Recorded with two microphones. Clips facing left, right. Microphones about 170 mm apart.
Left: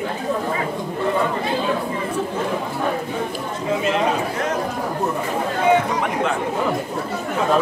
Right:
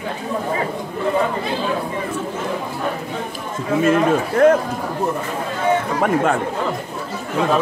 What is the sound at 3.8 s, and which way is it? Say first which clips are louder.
Speech: right 7 dB; 50° right (ahead or behind).